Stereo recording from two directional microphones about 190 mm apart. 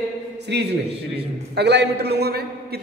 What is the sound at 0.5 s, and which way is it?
A man's voice, 65° right (ahead or behind).